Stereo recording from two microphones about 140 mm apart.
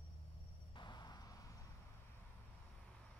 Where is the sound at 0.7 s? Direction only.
35° left (ahead or behind).